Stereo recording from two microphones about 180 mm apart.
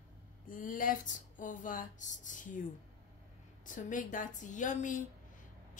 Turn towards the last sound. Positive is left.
turn(degrees=45)  # may be behind; listen again after turning